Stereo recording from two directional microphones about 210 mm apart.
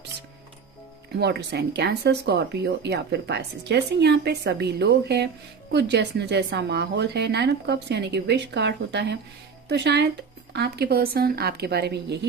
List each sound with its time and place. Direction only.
1.1 s a woman's voice: 50° right (ahead or behind)